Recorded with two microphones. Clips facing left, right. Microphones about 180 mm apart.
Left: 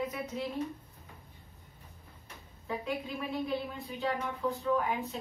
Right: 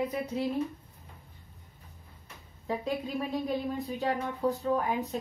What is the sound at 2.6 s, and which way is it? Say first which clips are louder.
A woman's voice: right 4 dB; 40° right (ahead or behind).